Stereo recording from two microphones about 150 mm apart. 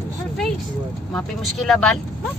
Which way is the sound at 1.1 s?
Centre (ahead or behind).